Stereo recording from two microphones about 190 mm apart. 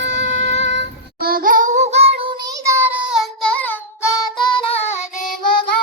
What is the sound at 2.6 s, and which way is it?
Child singing, 15° right (ahead or behind).